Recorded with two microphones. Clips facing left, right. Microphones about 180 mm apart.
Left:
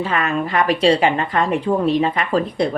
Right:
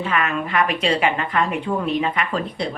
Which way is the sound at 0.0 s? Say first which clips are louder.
Left 2 dB; 35° left (ahead or behind).